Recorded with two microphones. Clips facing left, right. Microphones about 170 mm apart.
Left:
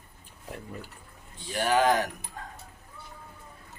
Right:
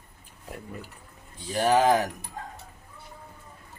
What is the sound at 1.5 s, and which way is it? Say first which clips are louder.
Speech: right 3 dB; 35° right (ahead or behind).